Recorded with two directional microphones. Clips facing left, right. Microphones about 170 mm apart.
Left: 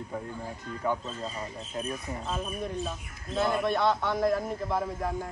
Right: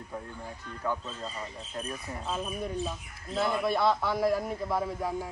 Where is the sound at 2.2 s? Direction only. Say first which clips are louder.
Right 1 dB; 5° right (ahead or behind).